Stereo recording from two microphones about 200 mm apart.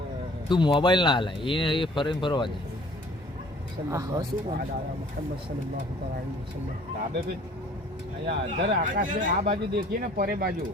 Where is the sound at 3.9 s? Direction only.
20° right (ahead or behind).